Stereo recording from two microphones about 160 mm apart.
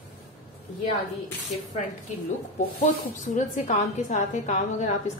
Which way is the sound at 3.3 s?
50° left (ahead or behind).